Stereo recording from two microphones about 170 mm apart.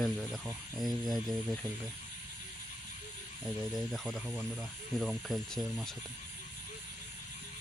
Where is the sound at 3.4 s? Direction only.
Centre (ahead or behind).